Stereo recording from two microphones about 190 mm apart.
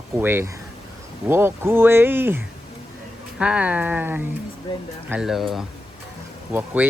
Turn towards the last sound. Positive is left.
turn(degrees=-10)  # may be behind; listen again after turning